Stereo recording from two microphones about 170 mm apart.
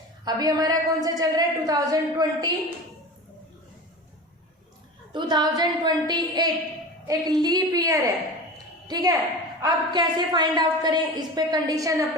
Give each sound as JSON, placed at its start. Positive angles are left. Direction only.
{"t": 0.3, "sound": "a woman's voice", "side_deg": -25}
{"t": 5.1, "sound": "a woman's voice", "side_deg": -25}